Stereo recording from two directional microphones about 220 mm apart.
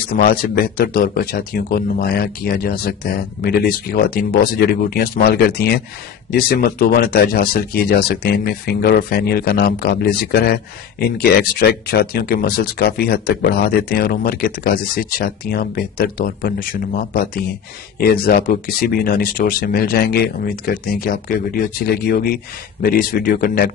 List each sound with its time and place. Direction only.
0.1 s speech: 45° left (ahead or behind)